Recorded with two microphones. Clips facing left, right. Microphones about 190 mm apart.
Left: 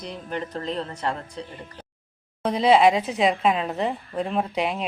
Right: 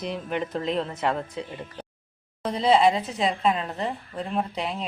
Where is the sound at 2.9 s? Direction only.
15° left (ahead or behind).